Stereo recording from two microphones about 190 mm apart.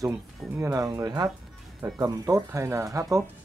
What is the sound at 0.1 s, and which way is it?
Speech, 15° right (ahead or behind).